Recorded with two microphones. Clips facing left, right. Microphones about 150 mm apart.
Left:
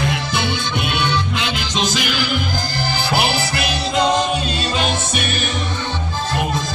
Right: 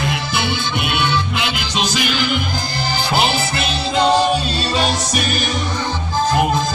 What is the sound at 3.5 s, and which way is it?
Music, 30° right (ahead or behind).